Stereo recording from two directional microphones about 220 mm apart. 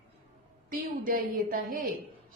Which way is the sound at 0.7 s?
40° right (ahead or behind).